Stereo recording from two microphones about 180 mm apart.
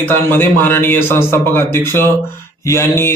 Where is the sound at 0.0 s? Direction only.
10° left (ahead or behind).